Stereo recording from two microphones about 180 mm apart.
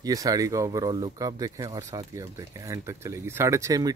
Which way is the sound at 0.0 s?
20° right (ahead or behind).